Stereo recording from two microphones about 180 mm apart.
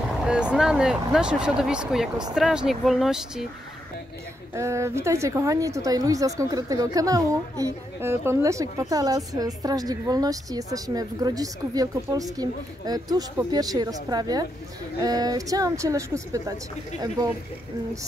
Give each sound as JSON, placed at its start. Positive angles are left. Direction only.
{"t": 0.3, "sound": "speech", "side_deg": -5}
{"t": 4.6, "sound": "speech", "side_deg": -15}